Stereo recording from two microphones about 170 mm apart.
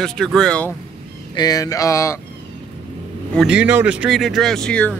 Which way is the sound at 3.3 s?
5° right (ahead or behind).